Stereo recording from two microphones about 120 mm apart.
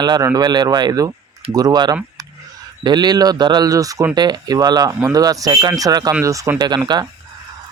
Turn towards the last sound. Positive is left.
turn(degrees=-35)  # may be behind; listen again after turning